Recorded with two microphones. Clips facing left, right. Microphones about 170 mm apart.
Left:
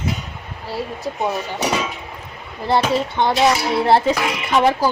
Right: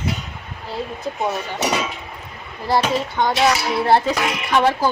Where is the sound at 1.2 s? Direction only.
10° left (ahead or behind).